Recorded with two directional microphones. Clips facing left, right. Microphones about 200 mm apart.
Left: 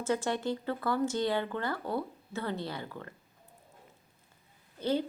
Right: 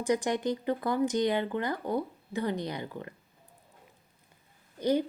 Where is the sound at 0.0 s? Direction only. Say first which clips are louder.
Right 3 dB; 15° right (ahead or behind).